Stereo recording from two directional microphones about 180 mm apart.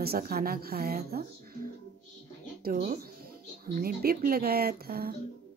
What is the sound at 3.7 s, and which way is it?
Speech, 55° right (ahead or behind).